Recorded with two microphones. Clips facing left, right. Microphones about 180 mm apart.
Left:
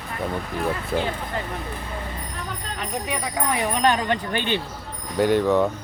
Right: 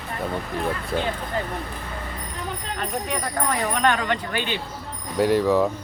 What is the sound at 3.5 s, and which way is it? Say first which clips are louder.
Speech: left 1 dB; 15° left (ahead or behind).